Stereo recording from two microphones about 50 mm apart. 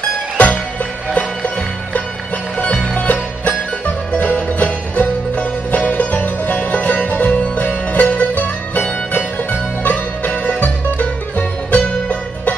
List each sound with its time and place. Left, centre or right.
0.4 s music: left
2.6 s music: left